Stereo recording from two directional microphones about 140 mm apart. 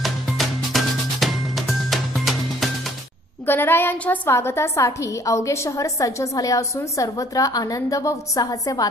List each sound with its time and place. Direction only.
0.0 s music: centre (ahead or behind)
3.4 s a woman's voice: 15° left (ahead or behind)